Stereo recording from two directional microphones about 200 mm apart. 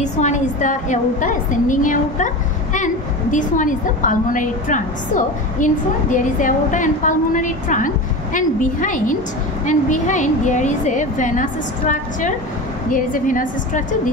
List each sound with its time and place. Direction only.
0.0 s a woman's voice: 35° left (ahead or behind)